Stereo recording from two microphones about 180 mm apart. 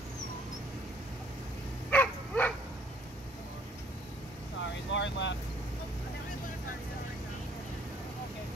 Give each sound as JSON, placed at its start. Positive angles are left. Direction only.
{"t": 1.9, "sound": "dog", "side_deg": 10}
{"t": 4.6, "sound": "vehicle", "side_deg": 90}